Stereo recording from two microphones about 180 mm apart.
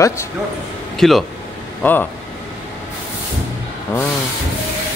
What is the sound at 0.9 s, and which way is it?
Speech, centre (ahead or behind).